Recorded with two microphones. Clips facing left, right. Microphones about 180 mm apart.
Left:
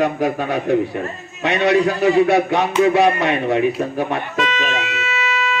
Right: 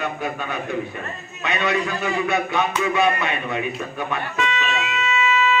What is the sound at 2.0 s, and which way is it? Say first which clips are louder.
Speech: left 10 dB; 35° left (ahead or behind).